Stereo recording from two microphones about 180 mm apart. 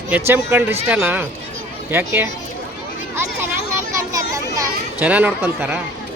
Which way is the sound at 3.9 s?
15° right (ahead or behind).